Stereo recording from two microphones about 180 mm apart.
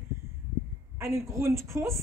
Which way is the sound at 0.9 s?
15° right (ahead or behind).